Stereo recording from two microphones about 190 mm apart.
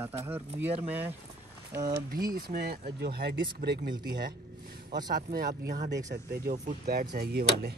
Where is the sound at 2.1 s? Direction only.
50° right (ahead or behind).